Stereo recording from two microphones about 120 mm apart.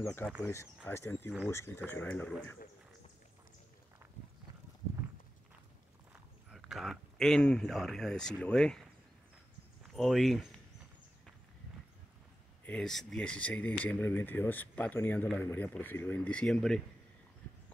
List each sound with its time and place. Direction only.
0.0 s speech: 20° left (ahead or behind)
6.5 s speech: centre (ahead or behind)
9.8 s speech: centre (ahead or behind)
12.6 s speech: 5° left (ahead or behind)